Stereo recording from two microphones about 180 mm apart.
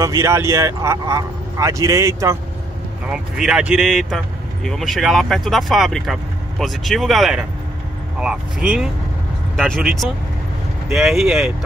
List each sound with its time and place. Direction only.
0.0 s speech: 15° right (ahead or behind)
3.1 s speech: 5° right (ahead or behind)